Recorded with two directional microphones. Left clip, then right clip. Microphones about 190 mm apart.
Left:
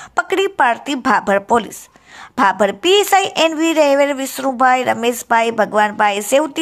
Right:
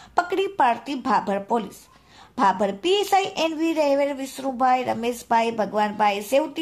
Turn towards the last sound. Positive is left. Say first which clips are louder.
# left 6 dB
turn(degrees=15)  # may be behind; listen again after turning